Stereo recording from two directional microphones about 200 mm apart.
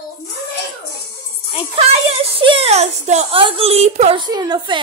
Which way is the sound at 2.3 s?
25° right (ahead or behind).